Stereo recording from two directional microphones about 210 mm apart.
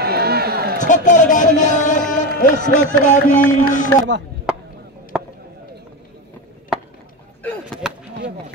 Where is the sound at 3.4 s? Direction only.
40° left (ahead or behind).